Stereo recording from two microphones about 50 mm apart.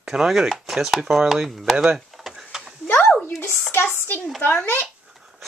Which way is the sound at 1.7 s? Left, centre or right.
Centre.